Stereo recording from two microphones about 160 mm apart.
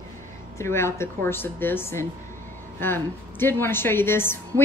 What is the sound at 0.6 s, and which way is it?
A woman's voice, 15° left (ahead or behind).